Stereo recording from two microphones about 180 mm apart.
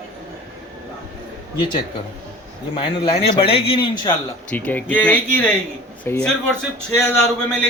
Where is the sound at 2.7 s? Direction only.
30° left (ahead or behind).